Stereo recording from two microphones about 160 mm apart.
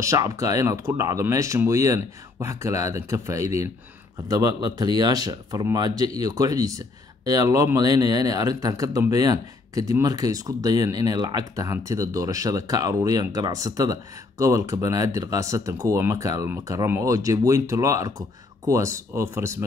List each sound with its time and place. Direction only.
0.0 s speech: 20° right (ahead or behind)